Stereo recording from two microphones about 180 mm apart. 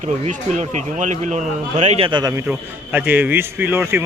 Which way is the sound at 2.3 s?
10° right (ahead or behind).